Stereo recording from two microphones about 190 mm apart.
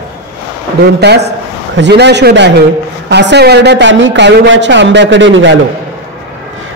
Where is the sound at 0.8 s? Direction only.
60° right (ahead or behind).